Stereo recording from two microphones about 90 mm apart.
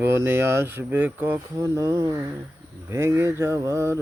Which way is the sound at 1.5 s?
35° right (ahead or behind).